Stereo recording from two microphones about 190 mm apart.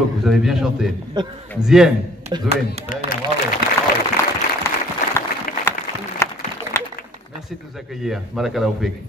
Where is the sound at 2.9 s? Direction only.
45° left (ahead or behind).